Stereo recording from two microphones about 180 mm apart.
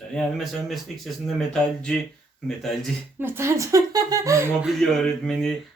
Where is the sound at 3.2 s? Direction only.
15° right (ahead or behind).